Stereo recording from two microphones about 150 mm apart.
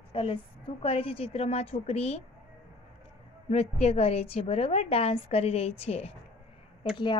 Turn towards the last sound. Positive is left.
turn(degrees=30)  # may be behind; listen again after turning